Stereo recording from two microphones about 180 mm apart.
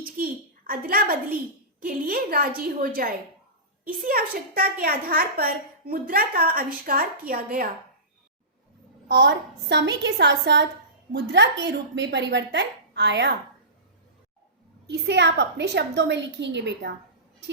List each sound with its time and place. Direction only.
0.7 s a woman's voice: 55° right (ahead or behind)
9.0 s a woman's voice: 80° right
14.8 s a woman's voice: 70° right (ahead or behind)